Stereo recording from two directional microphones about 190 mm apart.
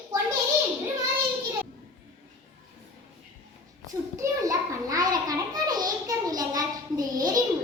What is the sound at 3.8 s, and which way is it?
A child's voice, 15° right (ahead or behind).